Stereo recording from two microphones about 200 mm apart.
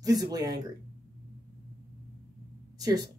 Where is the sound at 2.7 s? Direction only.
20° right (ahead or behind).